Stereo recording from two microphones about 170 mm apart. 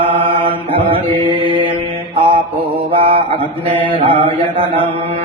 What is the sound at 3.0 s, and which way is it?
Mantra, 30° right (ahead or behind).